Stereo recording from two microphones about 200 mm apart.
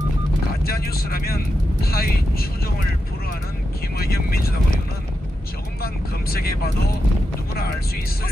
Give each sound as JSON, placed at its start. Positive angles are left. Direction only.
{"t": 0.7, "sound": "speech", "side_deg": 50}
{"t": 4.0, "sound": "speech", "side_deg": 50}
{"t": 6.3, "sound": "speech", "side_deg": 50}